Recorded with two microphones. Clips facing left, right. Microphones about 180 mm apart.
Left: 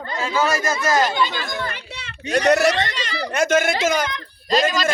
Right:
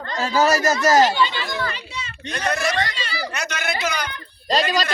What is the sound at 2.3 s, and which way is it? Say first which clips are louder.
Speech: left 8 dB; 70° left (ahead or behind).